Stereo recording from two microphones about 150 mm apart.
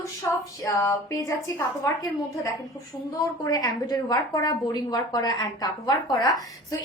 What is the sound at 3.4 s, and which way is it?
A woman's voice, 25° left (ahead or behind).